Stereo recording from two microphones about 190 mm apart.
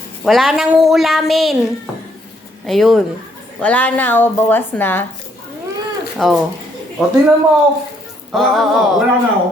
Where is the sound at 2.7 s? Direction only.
Centre (ahead or behind).